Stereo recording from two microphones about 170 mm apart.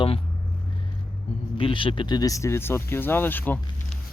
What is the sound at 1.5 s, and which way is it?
Speech, 30° left (ahead or behind).